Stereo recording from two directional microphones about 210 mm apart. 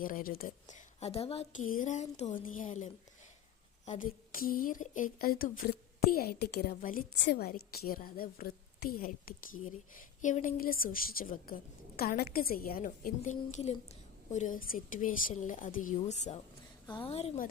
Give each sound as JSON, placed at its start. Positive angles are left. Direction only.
{"t": 0.0, "sound": "a woman's voice", "side_deg": 40}
{"t": 1.6, "sound": "a woman's voice", "side_deg": 40}